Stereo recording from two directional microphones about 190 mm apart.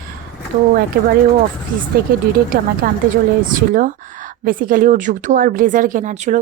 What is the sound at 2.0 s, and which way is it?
Speech, 55° right (ahead or behind).